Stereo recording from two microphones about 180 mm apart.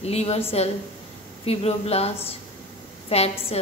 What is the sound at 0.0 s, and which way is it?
A woman's voice, 35° left (ahead or behind).